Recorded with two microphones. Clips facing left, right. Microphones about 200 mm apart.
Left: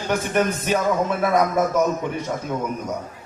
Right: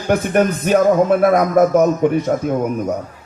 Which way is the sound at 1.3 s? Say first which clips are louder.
Right 7 dB; 55° right (ahead or behind).